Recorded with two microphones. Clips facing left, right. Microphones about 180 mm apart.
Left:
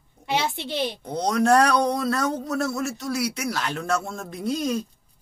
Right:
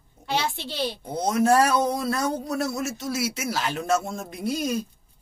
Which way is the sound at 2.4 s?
15° right (ahead or behind).